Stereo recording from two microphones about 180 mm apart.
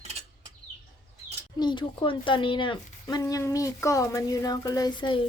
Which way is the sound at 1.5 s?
25° left (ahead or behind).